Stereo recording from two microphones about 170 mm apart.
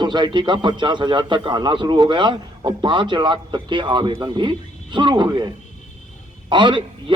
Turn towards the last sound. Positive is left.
turn(degrees=-25)  # may be behind; listen again after turning